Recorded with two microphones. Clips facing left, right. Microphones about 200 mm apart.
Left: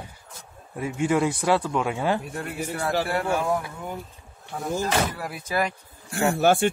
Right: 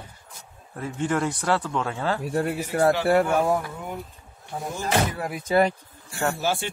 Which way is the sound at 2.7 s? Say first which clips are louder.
Right 11 dB; 45° right (ahead or behind).